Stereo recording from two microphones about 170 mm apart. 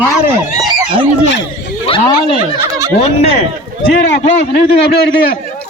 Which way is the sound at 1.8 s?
30° left (ahead or behind).